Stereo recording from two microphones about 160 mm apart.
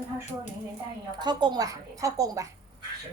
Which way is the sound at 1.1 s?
25° right (ahead or behind).